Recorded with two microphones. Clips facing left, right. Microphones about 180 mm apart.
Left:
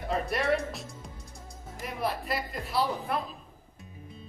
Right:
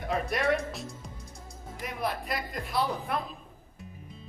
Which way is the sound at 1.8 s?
Centre (ahead or behind).